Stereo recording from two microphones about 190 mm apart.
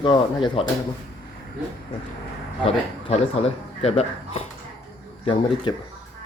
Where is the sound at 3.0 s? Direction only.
35° left (ahead or behind).